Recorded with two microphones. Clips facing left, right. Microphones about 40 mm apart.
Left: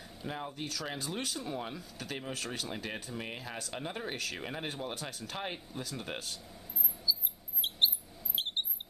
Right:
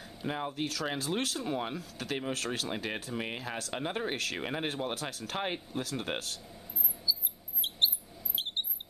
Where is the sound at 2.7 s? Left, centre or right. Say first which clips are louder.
Right 4 dB; right.